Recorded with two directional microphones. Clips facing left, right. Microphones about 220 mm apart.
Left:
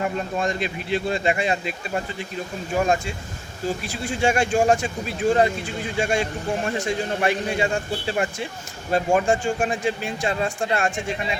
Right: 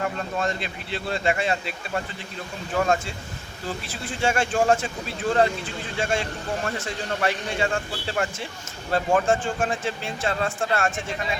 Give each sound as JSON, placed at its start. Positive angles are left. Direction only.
{"t": 0.0, "sound": "a man's voice", "side_deg": 15}
{"t": 2.7, "sound": "a man's voice", "side_deg": 15}